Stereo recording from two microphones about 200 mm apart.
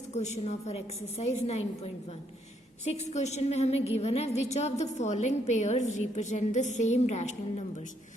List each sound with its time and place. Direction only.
0.1 s a woman's voice: 35° left (ahead or behind)